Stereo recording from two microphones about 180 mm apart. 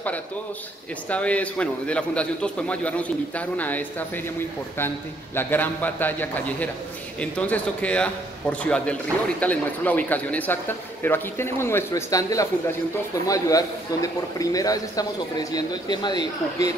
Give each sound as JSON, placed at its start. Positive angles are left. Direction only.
{"t": 1.1, "sound": "a man's voice", "side_deg": 10}